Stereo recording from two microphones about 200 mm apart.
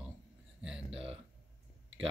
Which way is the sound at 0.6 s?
5° right (ahead or behind).